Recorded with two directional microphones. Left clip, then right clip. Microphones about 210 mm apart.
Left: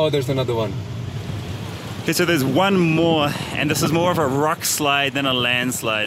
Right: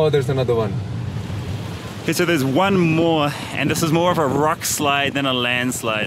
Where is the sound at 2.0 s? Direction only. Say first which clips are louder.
Even; 5° left (ahead or behind).